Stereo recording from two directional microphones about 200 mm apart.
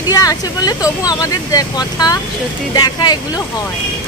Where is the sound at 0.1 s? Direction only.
20° left (ahead or behind).